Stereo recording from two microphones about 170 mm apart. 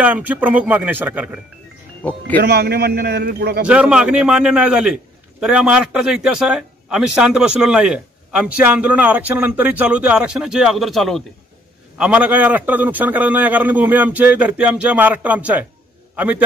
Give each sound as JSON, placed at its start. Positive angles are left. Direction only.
{"t": 0.0, "sound": "a man's voice", "side_deg": -10}
{"t": 2.0, "sound": "speech", "side_deg": 10}
{"t": 2.4, "sound": "a man's voice", "side_deg": -70}
{"t": 3.6, "sound": "a man's voice", "side_deg": -5}